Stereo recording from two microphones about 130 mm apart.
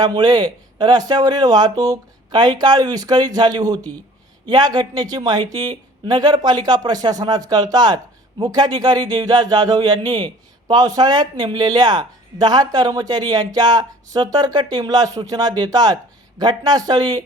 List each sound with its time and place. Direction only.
0.0 s a man's voice: 35° right (ahead or behind)